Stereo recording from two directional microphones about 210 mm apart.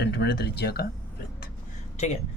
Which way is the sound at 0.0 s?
55° left (ahead or behind).